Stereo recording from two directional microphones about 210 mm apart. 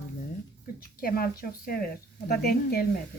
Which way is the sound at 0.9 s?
45° left (ahead or behind).